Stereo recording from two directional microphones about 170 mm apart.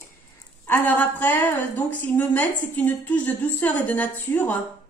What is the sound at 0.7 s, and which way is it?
A woman's voice, 10° left (ahead or behind).